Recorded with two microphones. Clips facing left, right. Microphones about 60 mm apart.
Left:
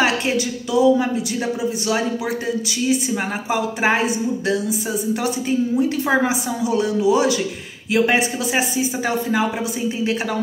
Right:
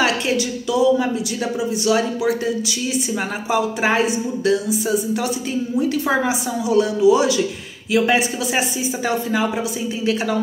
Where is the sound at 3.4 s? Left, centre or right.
Left.